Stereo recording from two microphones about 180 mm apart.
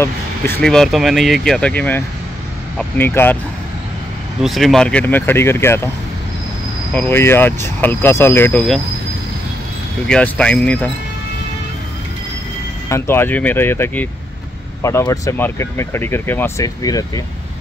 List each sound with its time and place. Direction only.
0.0 s speech: 10° left (ahead or behind)
4.4 s speech: centre (ahead or behind)
6.9 s speech: 10° left (ahead or behind)
10.0 s speech: 5° left (ahead or behind)
12.9 s speech: 15° left (ahead or behind)